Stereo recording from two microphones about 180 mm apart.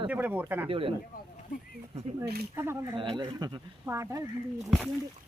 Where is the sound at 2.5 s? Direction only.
15° right (ahead or behind).